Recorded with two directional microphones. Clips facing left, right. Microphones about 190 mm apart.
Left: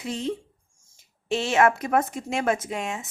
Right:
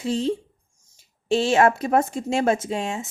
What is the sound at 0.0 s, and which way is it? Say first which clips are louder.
A woman's voice: right 6 dB; 30° right (ahead or behind).